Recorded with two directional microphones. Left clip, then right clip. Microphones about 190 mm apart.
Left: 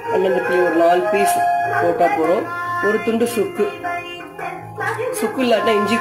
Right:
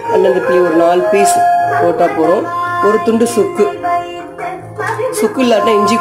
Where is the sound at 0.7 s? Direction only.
5° right (ahead or behind).